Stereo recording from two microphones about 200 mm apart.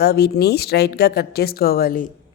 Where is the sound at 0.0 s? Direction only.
55° left (ahead or behind).